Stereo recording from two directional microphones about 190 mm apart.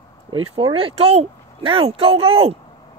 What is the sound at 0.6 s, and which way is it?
Speech, 25° right (ahead or behind).